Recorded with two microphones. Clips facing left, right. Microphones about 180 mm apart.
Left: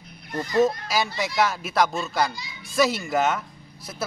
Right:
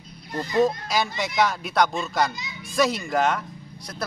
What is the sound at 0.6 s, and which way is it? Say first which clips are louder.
A man's voice: even; centre (ahead or behind).